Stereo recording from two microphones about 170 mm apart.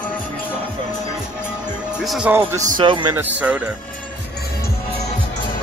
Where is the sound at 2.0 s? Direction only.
Centre (ahead or behind).